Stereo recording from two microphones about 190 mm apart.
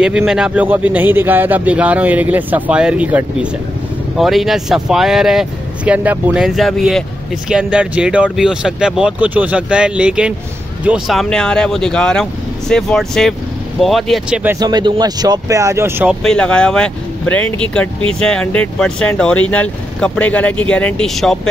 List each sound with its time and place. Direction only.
0.0 s a man's voice: 5° right (ahead or behind)
14.6 s speech: 20° right (ahead or behind)
16.2 s speech: 5° left (ahead or behind)